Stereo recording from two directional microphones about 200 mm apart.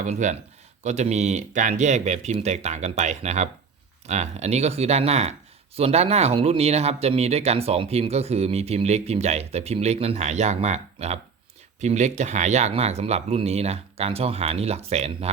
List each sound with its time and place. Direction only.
0.0 s speech: 40° right (ahead or behind)